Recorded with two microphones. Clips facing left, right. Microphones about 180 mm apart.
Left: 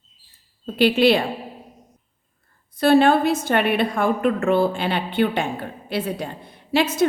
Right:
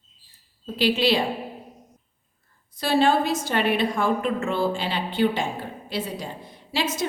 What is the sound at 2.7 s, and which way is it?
A woman's voice, 55° left (ahead or behind).